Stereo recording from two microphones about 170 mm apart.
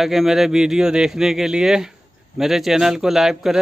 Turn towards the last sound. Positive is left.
turn(degrees=0)  # may be behind; listen again after turning